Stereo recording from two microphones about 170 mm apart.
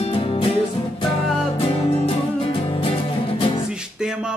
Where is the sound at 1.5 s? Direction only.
35° left (ahead or behind).